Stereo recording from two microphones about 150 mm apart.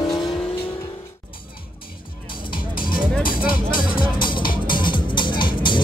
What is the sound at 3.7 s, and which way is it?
Music, 30° left (ahead or behind).